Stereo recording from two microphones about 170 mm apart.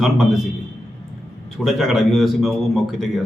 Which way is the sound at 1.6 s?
Centre (ahead or behind).